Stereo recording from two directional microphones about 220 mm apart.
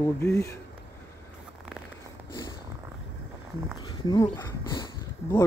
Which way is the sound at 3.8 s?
20° left (ahead or behind).